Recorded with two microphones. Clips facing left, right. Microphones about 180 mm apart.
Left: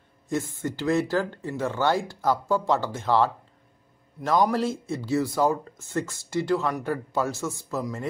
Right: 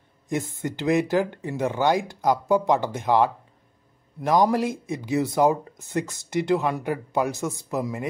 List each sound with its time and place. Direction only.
0.3 s speech: 20° right (ahead or behind)